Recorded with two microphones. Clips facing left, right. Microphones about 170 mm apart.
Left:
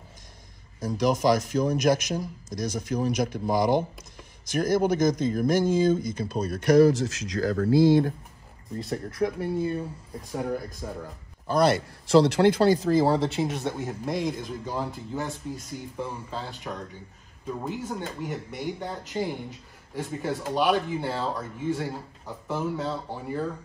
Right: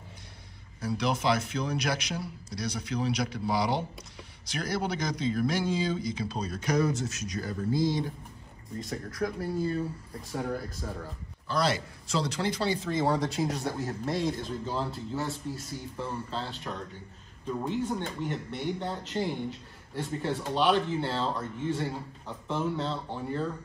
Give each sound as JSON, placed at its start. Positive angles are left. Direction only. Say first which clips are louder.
{"t": 0.7, "sound": "speech", "louder": "left 5 dB", "side_deg": 45}
{"t": 8.7, "sound": "a man's voice", "louder": "left 5 dB", "side_deg": 30}
{"t": 11.4, "sound": "a man's voice", "louder": "left 7 dB", "side_deg": 55}